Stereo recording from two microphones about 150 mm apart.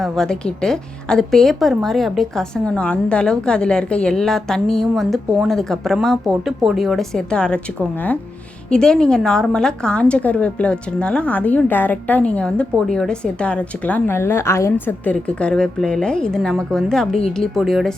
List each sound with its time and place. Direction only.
0.0 s a woman's voice: 5° left (ahead or behind)